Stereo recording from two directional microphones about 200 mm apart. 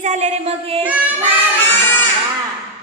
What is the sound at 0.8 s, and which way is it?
Speech, 10° right (ahead or behind).